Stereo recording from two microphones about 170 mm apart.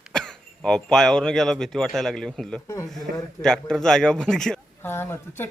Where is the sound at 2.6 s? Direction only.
20° left (ahead or behind).